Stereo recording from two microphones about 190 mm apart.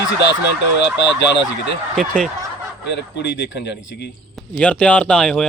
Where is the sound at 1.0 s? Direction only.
70° left (ahead or behind).